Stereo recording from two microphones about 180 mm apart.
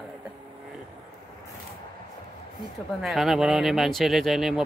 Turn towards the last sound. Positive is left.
turn(degrees=0)  # may be behind; listen again after turning